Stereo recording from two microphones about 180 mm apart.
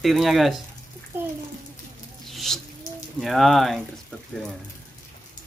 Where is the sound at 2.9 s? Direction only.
45° left (ahead or behind).